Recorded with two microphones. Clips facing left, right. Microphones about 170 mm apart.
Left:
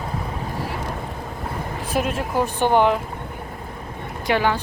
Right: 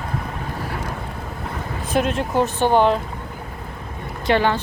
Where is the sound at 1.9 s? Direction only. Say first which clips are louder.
Right 3 dB; 5° left (ahead or behind).